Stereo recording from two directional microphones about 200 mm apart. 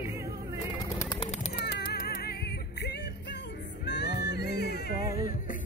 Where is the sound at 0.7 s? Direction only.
15° left (ahead or behind).